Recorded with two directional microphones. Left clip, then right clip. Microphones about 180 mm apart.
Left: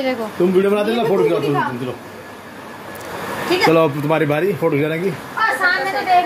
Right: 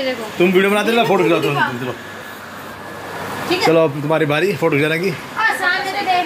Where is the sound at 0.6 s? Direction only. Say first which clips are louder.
Right 1 dB; 25° right (ahead or behind).